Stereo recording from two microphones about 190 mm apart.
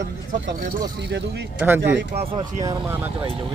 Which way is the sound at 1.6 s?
10° right (ahead or behind).